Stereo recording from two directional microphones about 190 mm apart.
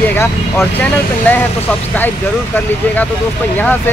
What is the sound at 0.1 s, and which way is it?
Vehicle, 10° left (ahead or behind).